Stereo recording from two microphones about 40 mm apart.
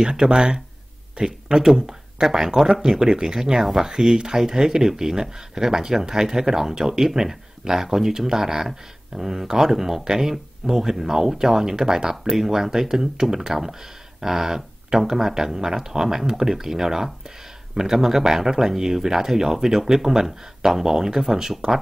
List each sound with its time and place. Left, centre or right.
0.0 s speech: centre